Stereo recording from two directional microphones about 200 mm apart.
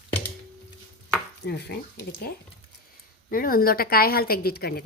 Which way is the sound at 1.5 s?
55° left (ahead or behind).